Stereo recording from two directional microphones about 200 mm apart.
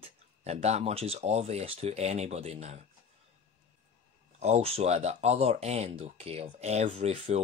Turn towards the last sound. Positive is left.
turn(degrees=-30)  # may be behind; listen again after turning